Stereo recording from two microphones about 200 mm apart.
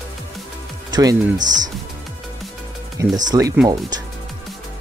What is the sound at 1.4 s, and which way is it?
Speech, 40° right (ahead or behind).